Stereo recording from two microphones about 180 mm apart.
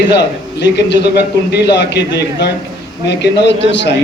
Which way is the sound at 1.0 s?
65° left (ahead or behind).